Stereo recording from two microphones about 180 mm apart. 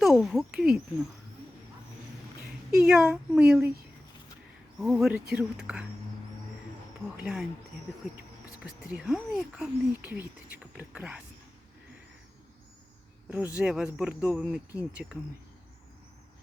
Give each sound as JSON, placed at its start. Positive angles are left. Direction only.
{"t": 0.0, "sound": "speech", "side_deg": 0}
{"t": 2.7, "sound": "speech", "side_deg": -5}
{"t": 4.8, "sound": "speech", "side_deg": 0}
{"t": 7.2, "sound": "speech", "side_deg": -5}
{"t": 9.0, "sound": "speech", "side_deg": -5}
{"t": 13.6, "sound": "speech", "side_deg": -5}